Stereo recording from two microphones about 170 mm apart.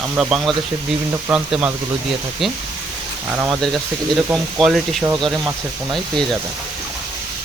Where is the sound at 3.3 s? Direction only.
10° right (ahead or behind).